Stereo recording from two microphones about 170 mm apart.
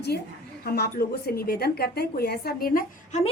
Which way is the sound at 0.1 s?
70° left (ahead or behind).